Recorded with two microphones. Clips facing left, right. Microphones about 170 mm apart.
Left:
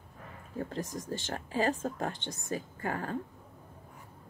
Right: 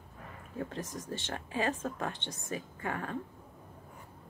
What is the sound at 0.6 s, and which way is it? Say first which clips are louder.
Speech: left 2 dB; 35° left (ahead or behind).